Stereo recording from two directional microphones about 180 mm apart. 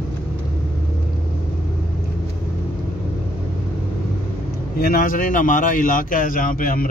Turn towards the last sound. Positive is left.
turn(degrees=50)  # may be behind; listen again after turning